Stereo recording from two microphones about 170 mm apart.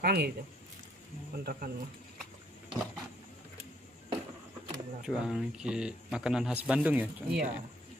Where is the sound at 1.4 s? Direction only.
60° right (ahead or behind).